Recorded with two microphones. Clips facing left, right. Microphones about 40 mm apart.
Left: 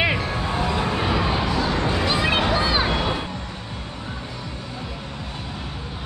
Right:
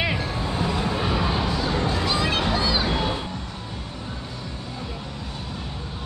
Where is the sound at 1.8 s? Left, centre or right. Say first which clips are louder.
Left 2 dB; left.